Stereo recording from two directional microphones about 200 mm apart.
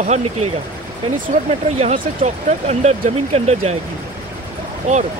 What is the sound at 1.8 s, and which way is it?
Speech, 35° right (ahead or behind).